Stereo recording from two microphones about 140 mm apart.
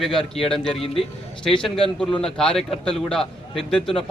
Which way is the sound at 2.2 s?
5° left (ahead or behind).